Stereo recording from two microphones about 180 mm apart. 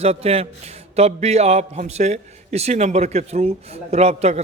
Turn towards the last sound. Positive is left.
turn(degrees=-35)  # may be behind; listen again after turning